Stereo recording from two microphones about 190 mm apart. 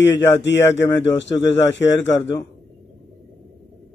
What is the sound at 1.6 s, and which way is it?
Speech, 70° left (ahead or behind).